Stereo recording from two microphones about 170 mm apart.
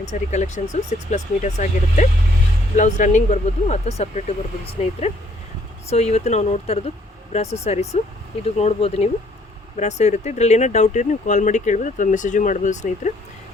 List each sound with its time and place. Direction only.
0.1 s speech: 45° left (ahead or behind)